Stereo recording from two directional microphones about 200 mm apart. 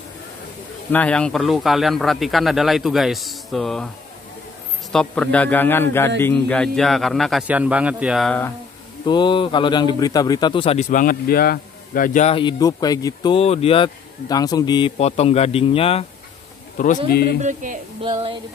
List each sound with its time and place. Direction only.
0.9 s speech: 5° left (ahead or behind)
4.9 s a man's voice: 5° left (ahead or behind)
9.0 s a man's voice: 20° left (ahead or behind)
16.7 s a man's voice: 40° left (ahead or behind)
17.1 s speech: 50° left (ahead or behind)
17.4 s speech: 40° right (ahead or behind)
18.0 s speech: 25° right (ahead or behind)